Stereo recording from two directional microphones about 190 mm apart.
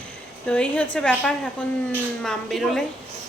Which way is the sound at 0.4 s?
5° left (ahead or behind).